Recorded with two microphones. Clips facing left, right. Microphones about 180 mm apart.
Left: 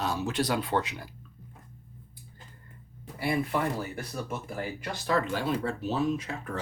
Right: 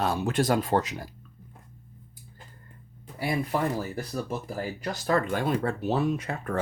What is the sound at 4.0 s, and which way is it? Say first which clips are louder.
Speech: right 3 dB; 35° right (ahead or behind).